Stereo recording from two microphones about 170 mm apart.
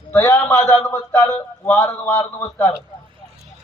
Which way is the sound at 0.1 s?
10° left (ahead or behind).